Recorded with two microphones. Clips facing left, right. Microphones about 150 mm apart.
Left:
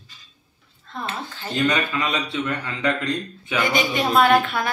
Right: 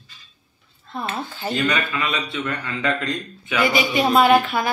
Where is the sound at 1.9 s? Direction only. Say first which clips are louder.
Left 1 dB; 20° left (ahead or behind).